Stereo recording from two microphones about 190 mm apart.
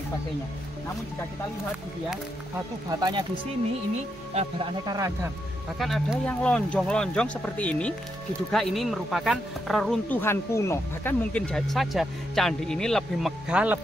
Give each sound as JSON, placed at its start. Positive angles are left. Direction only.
{"t": 2.9, "sound": "speech", "side_deg": -25}
{"t": 3.9, "sound": "speech", "side_deg": -35}
{"t": 5.8, "sound": "speech", "side_deg": 0}